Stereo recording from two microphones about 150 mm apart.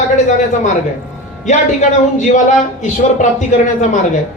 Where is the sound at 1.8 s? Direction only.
55° left (ahead or behind).